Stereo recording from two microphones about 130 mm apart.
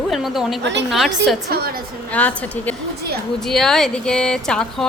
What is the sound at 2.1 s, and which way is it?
A woman's voice, 10° left (ahead or behind).